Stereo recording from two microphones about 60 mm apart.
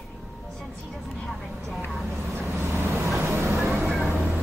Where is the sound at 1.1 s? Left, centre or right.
Centre.